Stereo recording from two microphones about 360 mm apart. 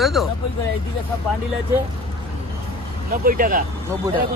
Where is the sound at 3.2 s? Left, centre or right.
Right.